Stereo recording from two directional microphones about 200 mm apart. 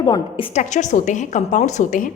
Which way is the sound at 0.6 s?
35° left (ahead or behind).